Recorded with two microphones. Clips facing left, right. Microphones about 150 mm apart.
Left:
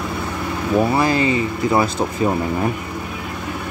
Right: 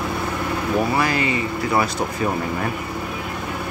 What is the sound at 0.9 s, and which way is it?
Speech, 30° left (ahead or behind).